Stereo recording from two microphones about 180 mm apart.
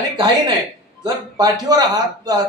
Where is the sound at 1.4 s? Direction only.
20° right (ahead or behind).